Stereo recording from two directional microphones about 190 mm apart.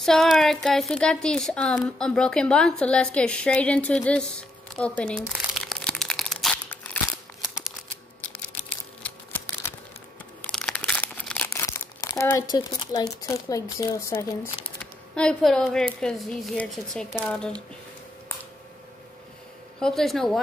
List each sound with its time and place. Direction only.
0.0 s speech: centre (ahead or behind)
5.3 s crumpling: centre (ahead or behind)
7.4 s a sound: 5° right (ahead or behind)
9.0 s a sound: 10° left (ahead or behind)
10.4 s crumpling: 5° left (ahead or behind); by 13.0 s 20° left (ahead or behind)
13.3 s speech: 15° left (ahead or behind)
15.1 s speech: 5° left (ahead or behind)
19.8 s speech: centre (ahead or behind)